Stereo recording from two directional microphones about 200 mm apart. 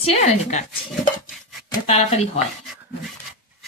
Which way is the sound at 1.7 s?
30° left (ahead or behind).